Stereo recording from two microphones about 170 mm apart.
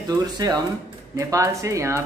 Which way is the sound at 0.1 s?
20° right (ahead or behind).